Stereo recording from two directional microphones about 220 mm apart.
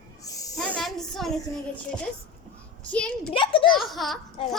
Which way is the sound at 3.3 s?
25° left (ahead or behind).